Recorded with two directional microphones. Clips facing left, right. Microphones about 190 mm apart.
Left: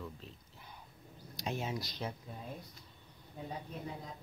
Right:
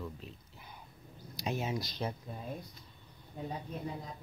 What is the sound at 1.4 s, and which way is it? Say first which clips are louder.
Speech: right 3 dB; 10° right (ahead or behind).